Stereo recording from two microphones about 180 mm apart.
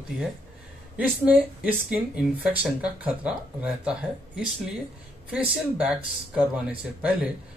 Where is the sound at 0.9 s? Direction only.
10° right (ahead or behind).